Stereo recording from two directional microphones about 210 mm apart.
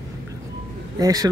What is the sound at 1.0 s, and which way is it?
Speech, 15° right (ahead or behind).